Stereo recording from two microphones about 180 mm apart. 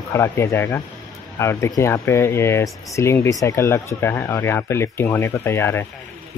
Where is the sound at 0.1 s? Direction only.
15° left (ahead or behind).